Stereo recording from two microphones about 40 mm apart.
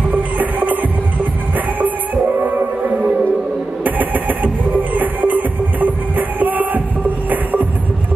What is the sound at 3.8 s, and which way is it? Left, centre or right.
Music, right.